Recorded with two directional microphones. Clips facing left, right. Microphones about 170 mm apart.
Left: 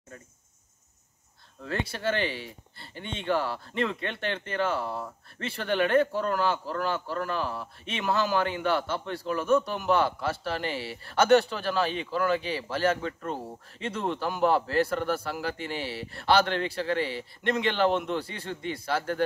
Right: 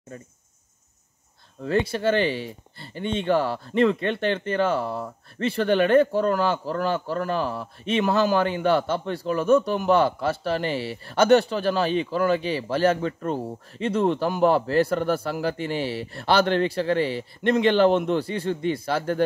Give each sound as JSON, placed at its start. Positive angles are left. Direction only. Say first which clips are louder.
{"t": 1.6, "sound": "speech", "louder": "right 9 dB", "side_deg": -20}